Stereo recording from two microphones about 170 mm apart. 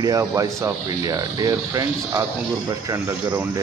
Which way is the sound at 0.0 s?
20° right (ahead or behind).